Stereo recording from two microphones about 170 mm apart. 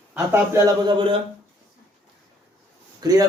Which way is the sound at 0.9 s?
30° right (ahead or behind).